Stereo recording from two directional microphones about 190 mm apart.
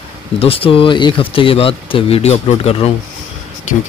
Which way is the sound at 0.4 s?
30° left (ahead or behind).